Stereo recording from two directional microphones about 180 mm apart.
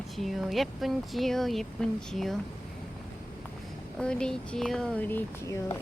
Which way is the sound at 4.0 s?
5° left (ahead or behind).